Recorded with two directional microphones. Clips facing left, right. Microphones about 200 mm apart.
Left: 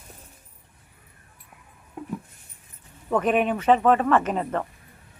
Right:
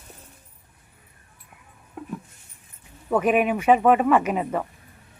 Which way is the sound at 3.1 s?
10° right (ahead or behind).